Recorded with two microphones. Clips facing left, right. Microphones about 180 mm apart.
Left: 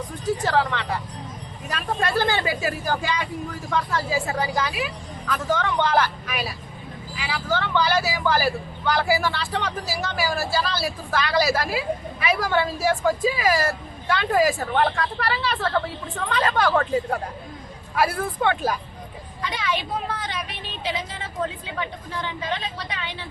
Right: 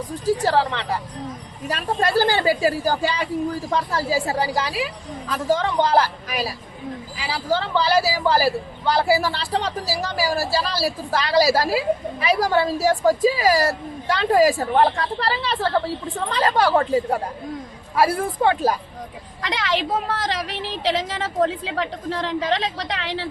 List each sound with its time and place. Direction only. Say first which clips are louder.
0.3 s speech: right 3 dB; 30° right (ahead or behind)
19.4 s a woman's voice: right 3 dB; 90° right